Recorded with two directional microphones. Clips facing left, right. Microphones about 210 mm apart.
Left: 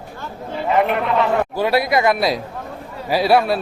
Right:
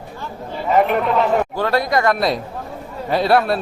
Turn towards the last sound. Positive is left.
turn(degrees=5)  # may be behind; listen again after turning